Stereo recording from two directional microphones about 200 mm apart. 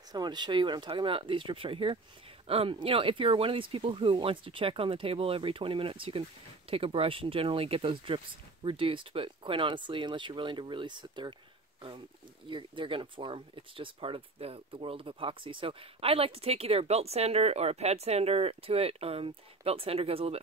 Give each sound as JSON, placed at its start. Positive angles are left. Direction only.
{"t": 0.1, "sound": "speech", "side_deg": -20}
{"t": 12.4, "sound": "speech", "side_deg": -25}